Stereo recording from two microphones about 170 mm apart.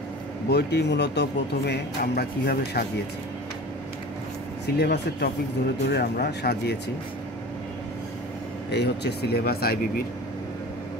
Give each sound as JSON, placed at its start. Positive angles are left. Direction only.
{"t": 0.5, "sound": "speech", "side_deg": 75}
{"t": 4.7, "sound": "speech", "side_deg": 75}
{"t": 8.7, "sound": "speech", "side_deg": 75}